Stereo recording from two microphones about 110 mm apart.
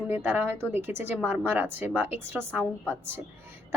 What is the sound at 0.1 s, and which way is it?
A woman's voice, 20° right (ahead or behind).